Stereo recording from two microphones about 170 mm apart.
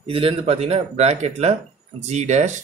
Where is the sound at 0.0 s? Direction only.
35° right (ahead or behind).